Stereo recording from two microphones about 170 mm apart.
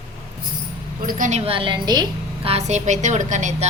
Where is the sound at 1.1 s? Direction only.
45° right (ahead or behind); by 2.0 s 25° right (ahead or behind).